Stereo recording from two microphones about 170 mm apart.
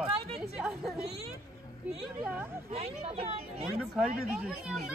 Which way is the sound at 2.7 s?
35° right (ahead or behind).